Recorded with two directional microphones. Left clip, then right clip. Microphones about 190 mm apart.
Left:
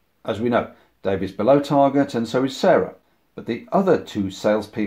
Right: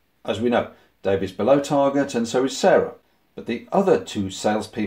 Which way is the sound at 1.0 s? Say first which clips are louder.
Left 1 dB; 35° left (ahead or behind).